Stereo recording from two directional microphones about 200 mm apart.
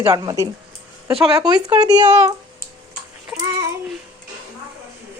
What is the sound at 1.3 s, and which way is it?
Speech, 20° right (ahead or behind).